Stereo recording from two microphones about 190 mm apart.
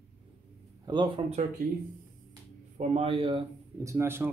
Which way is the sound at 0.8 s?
25° right (ahead or behind).